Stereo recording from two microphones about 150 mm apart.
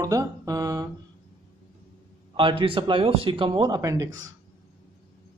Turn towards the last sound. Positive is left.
turn(degrees=-25)  # may be behind; listen again after turning